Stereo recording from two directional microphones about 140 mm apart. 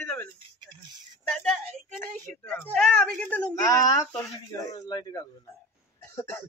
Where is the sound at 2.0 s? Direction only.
10° left (ahead or behind).